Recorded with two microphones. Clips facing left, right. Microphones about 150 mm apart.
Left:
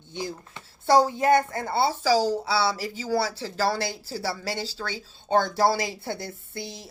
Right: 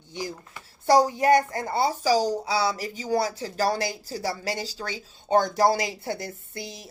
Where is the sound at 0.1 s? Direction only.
10° right (ahead or behind).